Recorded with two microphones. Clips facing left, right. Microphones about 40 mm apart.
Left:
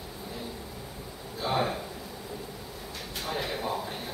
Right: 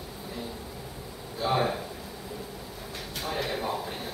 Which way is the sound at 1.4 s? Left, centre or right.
Centre.